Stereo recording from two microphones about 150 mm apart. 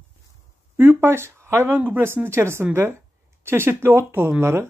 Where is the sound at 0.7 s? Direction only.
15° right (ahead or behind).